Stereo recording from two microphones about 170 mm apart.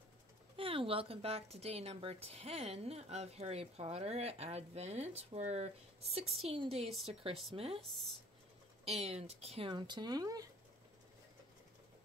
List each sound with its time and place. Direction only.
0.6 s speech: 30° right (ahead or behind)
7.9 s speech: centre (ahead or behind)
8.8 s speech: 40° right (ahead or behind); by 10.5 s 20° right (ahead or behind)